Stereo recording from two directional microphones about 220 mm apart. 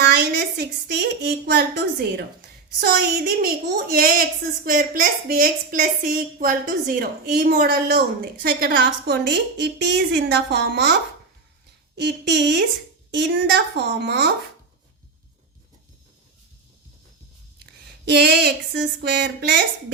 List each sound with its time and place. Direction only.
0.0 s a woman's voice: 45° right (ahead or behind)
11.9 s a woman's voice: 50° right (ahead or behind)
18.0 s a woman's voice: 50° right (ahead or behind)